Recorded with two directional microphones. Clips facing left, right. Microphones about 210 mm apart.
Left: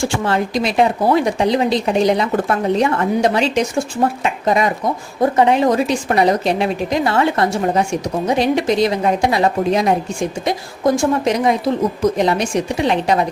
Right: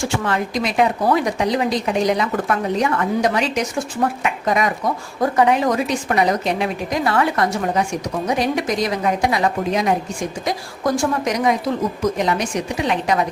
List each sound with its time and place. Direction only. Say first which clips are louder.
0.0 s a woman's voice: left 3 dB; 30° left (ahead or behind)